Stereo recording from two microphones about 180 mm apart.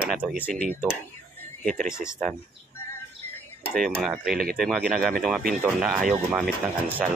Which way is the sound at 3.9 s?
5° right (ahead or behind).